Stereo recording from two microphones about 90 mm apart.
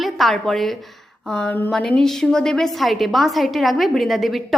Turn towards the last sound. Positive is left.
turn(degrees=0)  # may be behind; listen again after turning